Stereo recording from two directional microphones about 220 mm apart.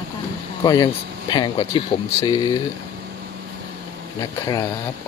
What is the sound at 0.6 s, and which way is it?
Speech, 15° left (ahead or behind).